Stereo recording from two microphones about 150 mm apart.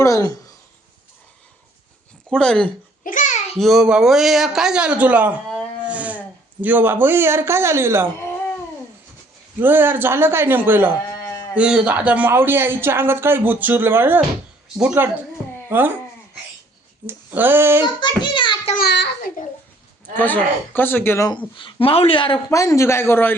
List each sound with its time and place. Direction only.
0.0 s speech: 25° left (ahead or behind)
2.3 s a man's voice: 5° left (ahead or behind)
3.0 s a sound: 60° left (ahead or behind)
3.6 s a man's voice: centre (ahead or behind)
5.5 s a sound: 5° right (ahead or behind)
9.6 s speech: 15° right (ahead or behind)
17.1 s speech: 15° right (ahead or behind)
18.0 s a child's voice: 30° left (ahead or behind)
18.8 s a child's voice: 85° left
20.1 s speech: 10° left (ahead or behind)
21.2 s speech: 35° left (ahead or behind)
22.4 s speech: 20° left (ahead or behind)